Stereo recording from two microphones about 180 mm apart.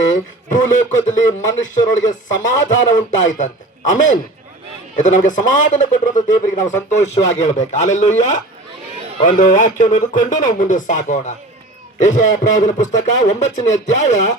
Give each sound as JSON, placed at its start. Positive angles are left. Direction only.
{"t": 0.1, "sound": "a man's voice", "side_deg": 45}